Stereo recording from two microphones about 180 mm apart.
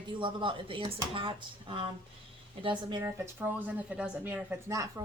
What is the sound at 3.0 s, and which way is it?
Speech, 10° right (ahead or behind).